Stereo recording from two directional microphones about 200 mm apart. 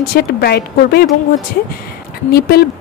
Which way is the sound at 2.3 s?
50° left (ahead or behind).